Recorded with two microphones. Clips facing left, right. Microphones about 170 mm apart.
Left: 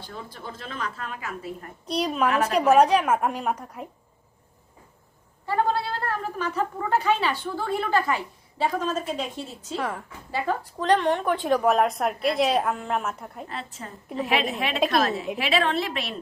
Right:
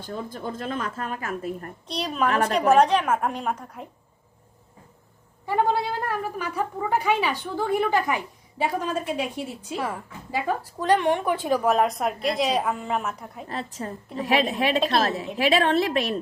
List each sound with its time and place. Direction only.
0.0 s a woman's voice: 45° right (ahead or behind)
1.9 s a woman's voice: 5° left (ahead or behind)
5.5 s a woman's voice: 15° right (ahead or behind)
11.4 s a woman's voice: centre (ahead or behind)
13.5 s a woman's voice: 40° right (ahead or behind)